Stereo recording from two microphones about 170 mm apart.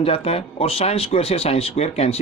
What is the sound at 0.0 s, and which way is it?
Speech, 35° left (ahead or behind).